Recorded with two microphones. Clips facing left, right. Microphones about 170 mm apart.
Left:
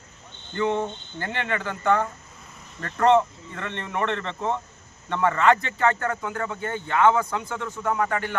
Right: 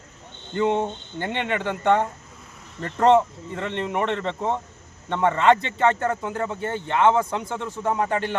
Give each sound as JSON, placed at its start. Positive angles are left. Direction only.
{"t": 0.5, "sound": "speech", "side_deg": -20}